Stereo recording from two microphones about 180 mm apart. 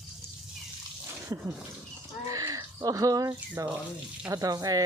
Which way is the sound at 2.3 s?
20° right (ahead or behind).